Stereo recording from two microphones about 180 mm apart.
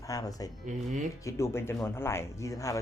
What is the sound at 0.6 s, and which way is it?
Speech, 45° right (ahead or behind).